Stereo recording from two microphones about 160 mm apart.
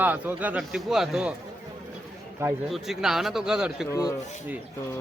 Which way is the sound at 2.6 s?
Centre (ahead or behind).